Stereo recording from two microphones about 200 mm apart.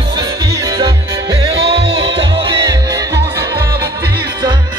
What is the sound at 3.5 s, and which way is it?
Music, 50° right (ahead or behind).